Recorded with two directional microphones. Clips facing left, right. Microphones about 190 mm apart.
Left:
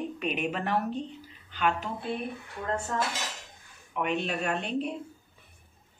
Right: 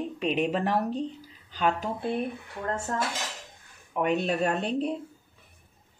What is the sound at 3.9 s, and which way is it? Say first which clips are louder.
A woman's voice: right 4 dB; 40° right (ahead or behind).